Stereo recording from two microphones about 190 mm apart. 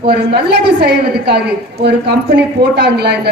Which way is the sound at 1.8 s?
60° right (ahead or behind).